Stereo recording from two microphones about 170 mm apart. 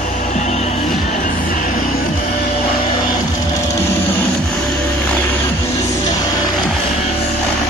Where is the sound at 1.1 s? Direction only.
50° left (ahead or behind).